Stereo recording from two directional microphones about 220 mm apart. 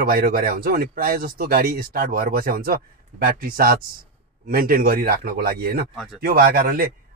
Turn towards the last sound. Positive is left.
turn(degrees=-40)  # may be behind; listen again after turning